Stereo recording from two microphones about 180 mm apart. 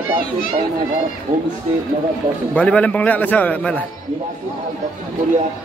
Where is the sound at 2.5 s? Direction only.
5° left (ahead or behind).